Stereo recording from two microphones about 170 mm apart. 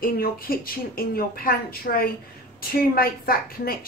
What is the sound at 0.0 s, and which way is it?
A woman's voice, 60° left (ahead or behind).